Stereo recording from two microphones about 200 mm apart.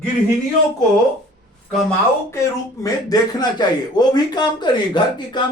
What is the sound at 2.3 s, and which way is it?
A man's voice, 15° left (ahead or behind).